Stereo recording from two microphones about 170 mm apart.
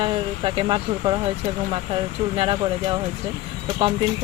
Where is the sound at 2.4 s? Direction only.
30° right (ahead or behind).